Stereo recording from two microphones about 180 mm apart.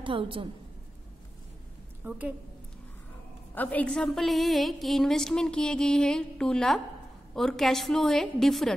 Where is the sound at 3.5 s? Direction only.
10° left (ahead or behind).